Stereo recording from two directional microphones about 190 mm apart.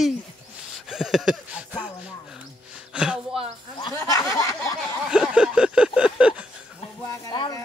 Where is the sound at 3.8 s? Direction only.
15° left (ahead or behind).